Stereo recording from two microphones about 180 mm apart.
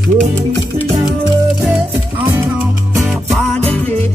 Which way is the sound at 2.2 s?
10° right (ahead or behind).